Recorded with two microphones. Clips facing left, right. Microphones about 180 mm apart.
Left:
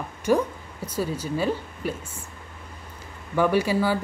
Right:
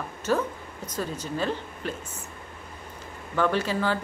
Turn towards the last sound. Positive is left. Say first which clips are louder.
# left 4 dB
turn(degrees=10)  # may be behind; listen again after turning